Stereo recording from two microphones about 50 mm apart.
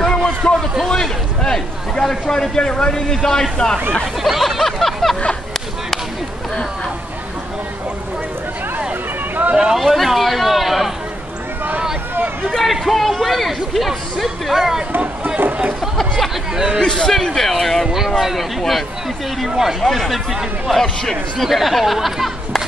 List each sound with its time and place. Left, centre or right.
0.0 s a sound: centre
0.8 s a man's voice: centre
4.0 s a sound: centre
9.6 s speech: centre
12.4 s hubbub: centre
12.8 s speech: centre
15.0 s run: right
15.4 s a sound: right
16.5 s speech: centre
16.8 s a man's voice: centre
17.8 s speech: centre
19.8 s speech: centre
20.8 s a man's voice: centre
21.5 s speech: centre